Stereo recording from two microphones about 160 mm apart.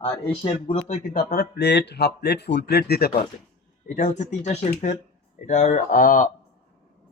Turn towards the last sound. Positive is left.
turn(degrees=55)  # may be behind; listen again after turning